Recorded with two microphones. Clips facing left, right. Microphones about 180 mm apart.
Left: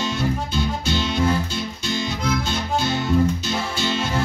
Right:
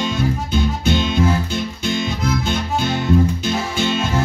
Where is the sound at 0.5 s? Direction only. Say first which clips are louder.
Right 5 dB; 55° right (ahead or behind).